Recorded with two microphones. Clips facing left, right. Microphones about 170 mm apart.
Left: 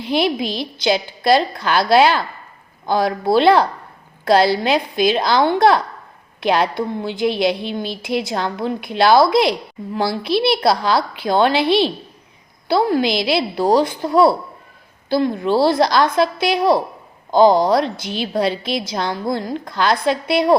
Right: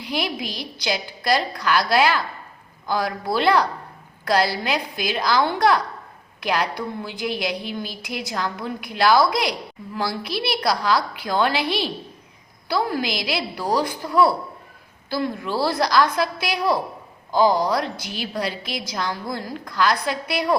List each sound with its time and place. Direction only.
0.0 s a woman's voice: 25° left (ahead or behind)